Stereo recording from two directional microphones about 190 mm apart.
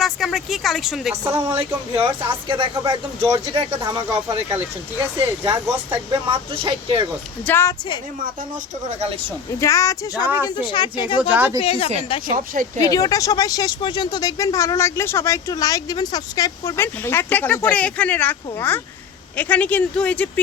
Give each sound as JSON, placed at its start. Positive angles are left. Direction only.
{"t": 0.0, "sound": "speech", "side_deg": 0}
{"t": 1.1, "sound": "speech", "side_deg": -15}
{"t": 2.5, "sound": "speech", "side_deg": -25}
{"t": 6.6, "sound": "speech", "side_deg": -25}
{"t": 7.4, "sound": "speech", "side_deg": 15}
{"t": 8.9, "sound": "speech", "side_deg": -30}
{"t": 9.6, "sound": "speech", "side_deg": 15}
{"t": 11.2, "sound": "speech", "side_deg": -10}
{"t": 11.6, "sound": "speech", "side_deg": 30}
{"t": 12.3, "sound": "speech", "side_deg": -45}
{"t": 12.8, "sound": "speech", "side_deg": 20}